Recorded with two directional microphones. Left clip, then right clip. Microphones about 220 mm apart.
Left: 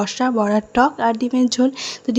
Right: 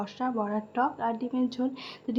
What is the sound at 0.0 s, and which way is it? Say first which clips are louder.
Speech: left 12 dB; 35° left (ahead or behind).